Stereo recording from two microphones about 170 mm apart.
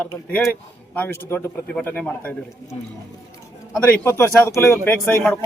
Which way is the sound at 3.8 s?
15° left (ahead or behind).